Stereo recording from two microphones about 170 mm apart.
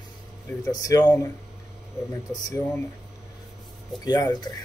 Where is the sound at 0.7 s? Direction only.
20° left (ahead or behind).